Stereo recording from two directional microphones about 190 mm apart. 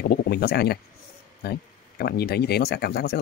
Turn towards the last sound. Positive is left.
turn(degrees=60)  # may be behind; listen again after turning